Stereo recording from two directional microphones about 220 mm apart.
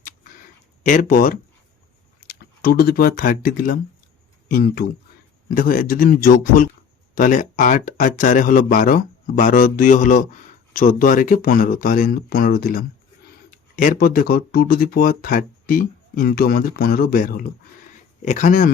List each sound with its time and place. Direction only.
0.9 s speech: 35° left (ahead or behind)